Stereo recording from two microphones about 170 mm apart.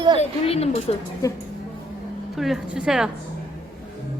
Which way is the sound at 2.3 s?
Centre (ahead or behind).